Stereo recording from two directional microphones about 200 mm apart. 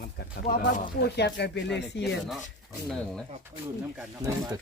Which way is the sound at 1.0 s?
55° left (ahead or behind).